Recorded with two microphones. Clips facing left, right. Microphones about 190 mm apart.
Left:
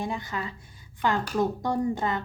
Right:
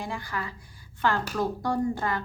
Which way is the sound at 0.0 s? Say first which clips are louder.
Left 2 dB; 20° left (ahead or behind).